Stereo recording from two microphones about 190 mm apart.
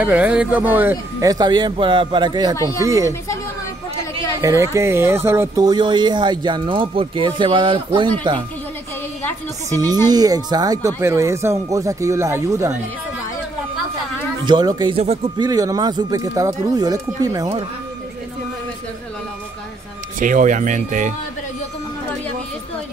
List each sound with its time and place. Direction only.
0.0 s speech: 10° right (ahead or behind)
2.5 s speech: 15° left (ahead or behind)
2.8 s speech: 15° right (ahead or behind)
4.4 s speech: 15° right (ahead or behind)
9.7 s speech: 20° right (ahead or behind)
14.4 s speech: 20° right (ahead or behind)
20.2 s speech: 45° right (ahead or behind)